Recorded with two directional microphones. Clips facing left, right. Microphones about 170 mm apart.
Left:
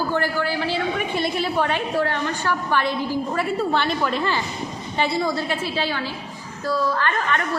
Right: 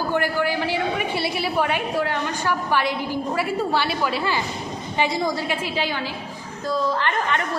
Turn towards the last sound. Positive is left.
turn(degrees=-20)  # may be behind; listen again after turning